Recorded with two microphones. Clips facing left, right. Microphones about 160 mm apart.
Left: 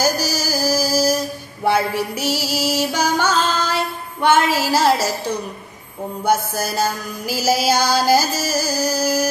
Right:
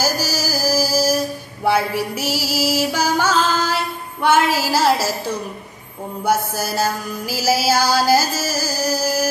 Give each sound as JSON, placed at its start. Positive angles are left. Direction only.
{"t": 0.0, "sound": "music", "side_deg": -5}
{"t": 6.2, "sound": "music", "side_deg": -5}